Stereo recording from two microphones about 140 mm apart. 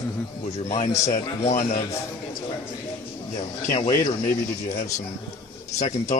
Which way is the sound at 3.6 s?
55° left (ahead or behind).